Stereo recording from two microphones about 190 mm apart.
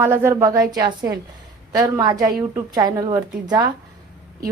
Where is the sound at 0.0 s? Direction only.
10° right (ahead or behind).